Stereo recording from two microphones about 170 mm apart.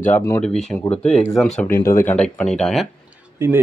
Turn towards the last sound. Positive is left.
turn(degrees=-15)  # may be behind; listen again after turning